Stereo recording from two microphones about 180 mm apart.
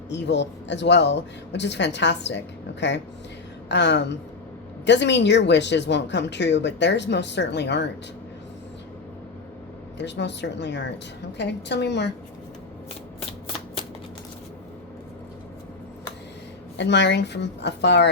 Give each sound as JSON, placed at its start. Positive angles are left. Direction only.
{"t": 0.1, "sound": "a woman's voice", "side_deg": 75}
{"t": 10.0, "sound": "a woman's voice", "side_deg": 75}
{"t": 16.7, "sound": "a woman's voice", "side_deg": 75}